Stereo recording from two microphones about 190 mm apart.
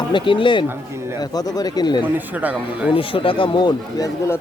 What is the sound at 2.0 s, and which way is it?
Speech, 10° right (ahead or behind).